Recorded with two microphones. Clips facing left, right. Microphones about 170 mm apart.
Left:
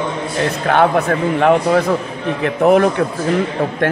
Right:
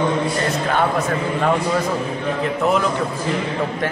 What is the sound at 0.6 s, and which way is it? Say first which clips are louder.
A man's voice: left 8 dB; 65° left (ahead or behind).